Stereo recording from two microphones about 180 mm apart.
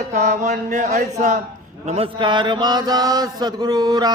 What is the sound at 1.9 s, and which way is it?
Mantra, 30° right (ahead or behind).